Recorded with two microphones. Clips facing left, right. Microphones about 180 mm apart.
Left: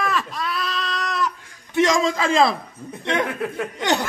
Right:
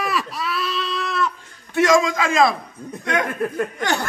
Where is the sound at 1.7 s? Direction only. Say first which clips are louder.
Right 2 dB; 25° left (ahead or behind).